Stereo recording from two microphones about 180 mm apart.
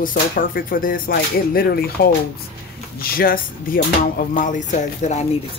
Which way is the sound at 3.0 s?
55° left (ahead or behind).